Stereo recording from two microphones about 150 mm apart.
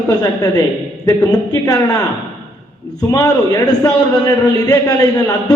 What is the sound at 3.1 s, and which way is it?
A man's voice, 25° left (ahead or behind).